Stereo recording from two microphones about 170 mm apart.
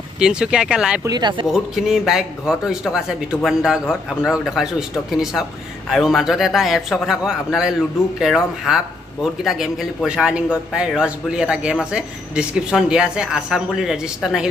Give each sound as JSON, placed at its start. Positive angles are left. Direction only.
{"t": 0.2, "sound": "speech", "side_deg": -5}
{"t": 1.0, "sound": "speech", "side_deg": -25}
{"t": 1.5, "sound": "speech", "side_deg": 0}